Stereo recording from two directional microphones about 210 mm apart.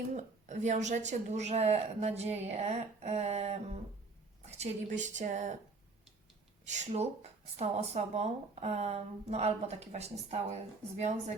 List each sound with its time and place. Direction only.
0.1 s speech: 35° right (ahead or behind)
6.7 s speech: 30° right (ahead or behind)